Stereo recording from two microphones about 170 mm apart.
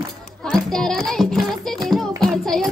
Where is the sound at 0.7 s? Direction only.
5° left (ahead or behind).